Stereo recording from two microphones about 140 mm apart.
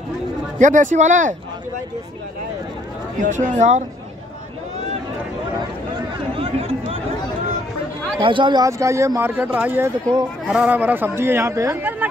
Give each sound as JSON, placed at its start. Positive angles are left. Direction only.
{"t": 0.6, "sound": "speech", "side_deg": -65}
{"t": 3.2, "sound": "speech", "side_deg": -60}
{"t": 6.3, "sound": "chatter", "side_deg": -45}
{"t": 8.2, "sound": "speech", "side_deg": -35}
{"t": 8.6, "sound": "speech", "side_deg": -20}